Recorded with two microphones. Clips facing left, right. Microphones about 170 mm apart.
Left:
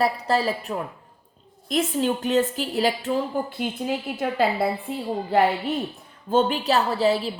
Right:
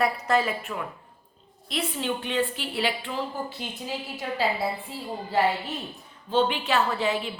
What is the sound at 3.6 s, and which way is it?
A woman's voice, 55° left (ahead or behind).